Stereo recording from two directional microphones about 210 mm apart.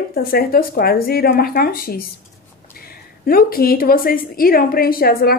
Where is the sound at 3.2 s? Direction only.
45° left (ahead or behind).